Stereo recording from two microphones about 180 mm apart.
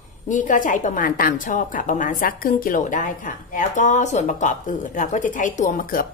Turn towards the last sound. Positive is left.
turn(degrees=50)  # may be behind; listen again after turning